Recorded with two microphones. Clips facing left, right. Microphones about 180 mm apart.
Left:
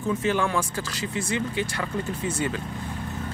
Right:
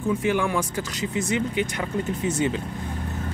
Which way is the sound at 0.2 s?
15° right (ahead or behind).